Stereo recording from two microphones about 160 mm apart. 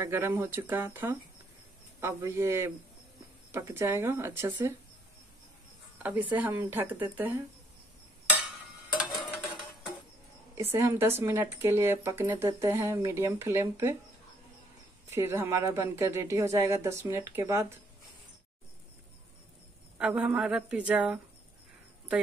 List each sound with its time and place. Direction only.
0.0 s speech: 15° right (ahead or behind)
6.0 s speech: 10° right (ahead or behind)
10.5 s speech: 15° right (ahead or behind)
15.0 s speech: 15° right (ahead or behind)
20.0 s speech: 5° right (ahead or behind)